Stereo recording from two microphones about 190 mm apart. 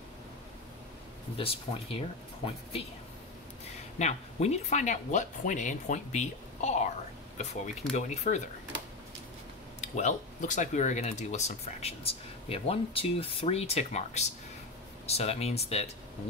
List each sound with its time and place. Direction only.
1.4 s speech: 30° left (ahead or behind)
4.0 s speech: 35° left (ahead or behind)
7.9 s speech: 35° left (ahead or behind)
9.8 s speech: 40° left (ahead or behind)